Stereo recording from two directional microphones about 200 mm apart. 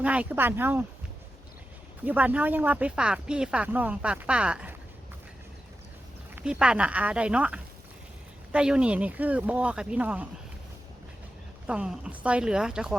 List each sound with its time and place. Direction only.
0.0 s speech: 5° right (ahead or behind)
2.0 s speech: 10° right (ahead or behind)
6.3 s speech: 5° right (ahead or behind)
11.6 s speech: 5° right (ahead or behind)